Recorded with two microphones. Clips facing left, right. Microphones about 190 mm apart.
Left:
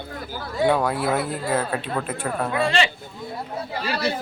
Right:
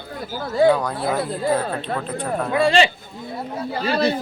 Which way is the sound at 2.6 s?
30° right (ahead or behind).